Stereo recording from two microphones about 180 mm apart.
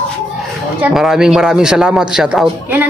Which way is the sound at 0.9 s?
Centre (ahead or behind).